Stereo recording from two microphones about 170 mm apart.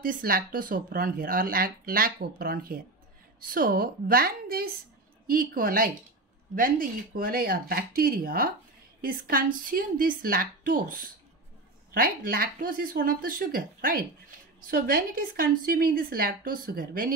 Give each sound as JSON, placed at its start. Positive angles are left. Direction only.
{"t": 0.0, "sound": "speech", "side_deg": -55}